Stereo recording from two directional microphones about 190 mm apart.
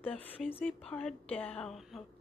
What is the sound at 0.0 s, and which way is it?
A woman's voice, 10° left (ahead or behind).